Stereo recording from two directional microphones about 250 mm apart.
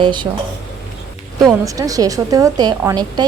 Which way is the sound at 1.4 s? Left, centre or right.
Centre.